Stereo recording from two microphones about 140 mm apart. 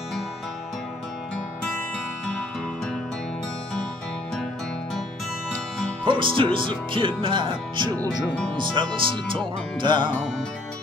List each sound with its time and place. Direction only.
6.0 s speech: 35° right (ahead or behind)